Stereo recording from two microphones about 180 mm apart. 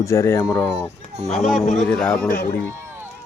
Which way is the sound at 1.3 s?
Centre (ahead or behind).